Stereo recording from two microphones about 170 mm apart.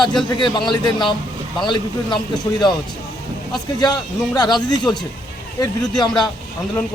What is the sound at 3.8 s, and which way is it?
A man's voice, 25° left (ahead or behind).